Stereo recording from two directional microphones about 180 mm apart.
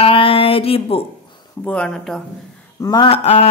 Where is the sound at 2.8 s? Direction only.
20° left (ahead or behind).